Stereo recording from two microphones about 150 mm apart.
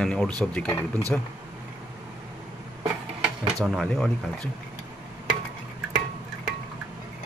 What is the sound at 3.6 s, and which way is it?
Speech, centre (ahead or behind).